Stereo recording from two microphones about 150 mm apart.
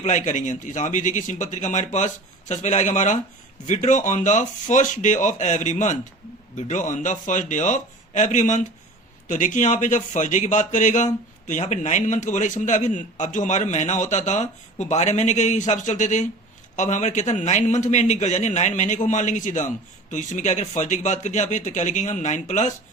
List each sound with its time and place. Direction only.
0.0 s a man's voice: 55° left (ahead or behind)